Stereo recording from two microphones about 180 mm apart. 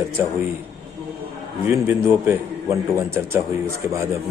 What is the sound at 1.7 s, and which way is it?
A man's voice, 15° right (ahead or behind).